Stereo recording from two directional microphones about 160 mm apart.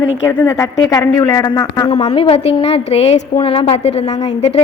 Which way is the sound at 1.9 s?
40° left (ahead or behind).